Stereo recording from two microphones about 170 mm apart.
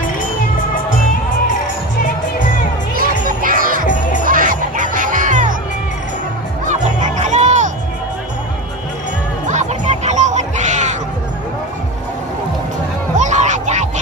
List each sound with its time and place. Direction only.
3.3 s music: 55° right (ahead or behind)
3.8 s music: 50° left (ahead or behind)
4.3 s music: 55° right (ahead or behind)
6.6 s music: 45° right (ahead or behind)
9.5 s music: 40° right (ahead or behind)
13.1 s a sound: 45° right (ahead or behind)